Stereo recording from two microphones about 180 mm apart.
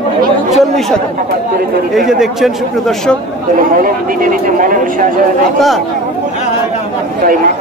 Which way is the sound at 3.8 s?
50° right (ahead or behind).